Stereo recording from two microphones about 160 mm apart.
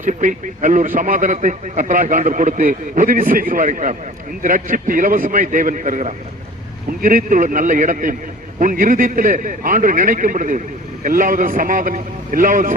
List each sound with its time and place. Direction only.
0.0 s a man's voice: 50° right (ahead or behind)